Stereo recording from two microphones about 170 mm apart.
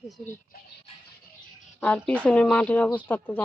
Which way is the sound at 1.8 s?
10° left (ahead or behind).